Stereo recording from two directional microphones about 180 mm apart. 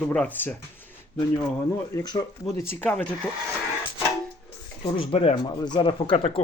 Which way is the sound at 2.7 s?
10° left (ahead or behind).